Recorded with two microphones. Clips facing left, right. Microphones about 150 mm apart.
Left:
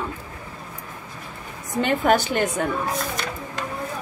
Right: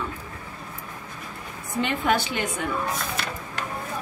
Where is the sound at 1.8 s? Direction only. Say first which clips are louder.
Left 4 dB; 45° left (ahead or behind).